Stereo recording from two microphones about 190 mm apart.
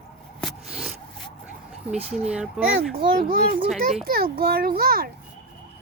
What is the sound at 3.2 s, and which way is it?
A child's voice, 50° right (ahead or behind).